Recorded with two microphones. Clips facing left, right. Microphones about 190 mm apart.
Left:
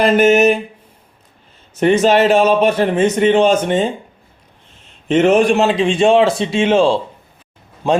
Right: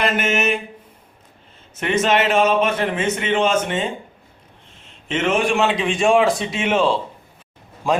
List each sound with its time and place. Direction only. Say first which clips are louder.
0.0 s a man's voice: left 10 dB; 40° left (ahead or behind)
1.7 s a man's voice: left 7 dB; 35° left (ahead or behind)
5.0 s a man's voice: left 8 dB; 40° left (ahead or behind)